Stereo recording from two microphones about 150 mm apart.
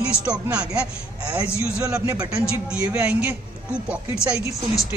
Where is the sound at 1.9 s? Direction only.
20° right (ahead or behind).